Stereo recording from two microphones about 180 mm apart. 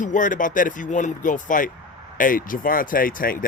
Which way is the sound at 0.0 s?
45° left (ahead or behind).